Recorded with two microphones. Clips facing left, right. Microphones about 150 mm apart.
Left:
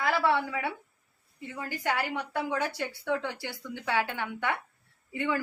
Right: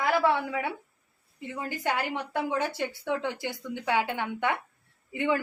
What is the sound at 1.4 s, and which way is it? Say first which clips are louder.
A woman's voice: right 2 dB; 20° right (ahead or behind).